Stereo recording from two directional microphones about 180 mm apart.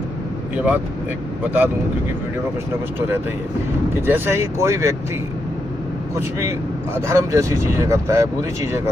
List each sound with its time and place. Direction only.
1.4 s speech: 10° right (ahead or behind)
3.9 s speech: 10° right (ahead or behind)
7.1 s speech: 15° right (ahead or behind)